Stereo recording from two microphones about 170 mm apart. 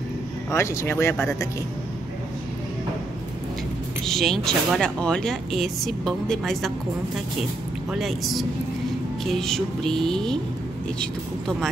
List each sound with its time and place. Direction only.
0.5 s speech: 15° left (ahead or behind)
4.0 s speech: centre (ahead or behind)
7.9 s speech: centre (ahead or behind)